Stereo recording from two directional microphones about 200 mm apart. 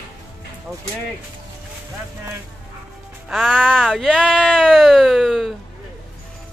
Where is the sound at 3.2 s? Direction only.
Centre (ahead or behind).